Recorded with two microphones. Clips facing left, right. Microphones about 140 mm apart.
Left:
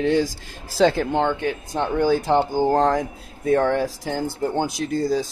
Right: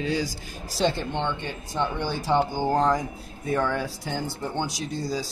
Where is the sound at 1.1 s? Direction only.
40° left (ahead or behind).